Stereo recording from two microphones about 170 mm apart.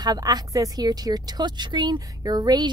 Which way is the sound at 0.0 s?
25° right (ahead or behind).